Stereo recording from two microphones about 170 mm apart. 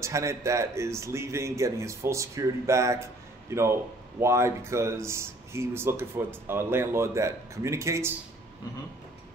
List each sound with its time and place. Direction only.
0.0 s speech: 15° right (ahead or behind)
4.2 s speech: 15° right (ahead or behind)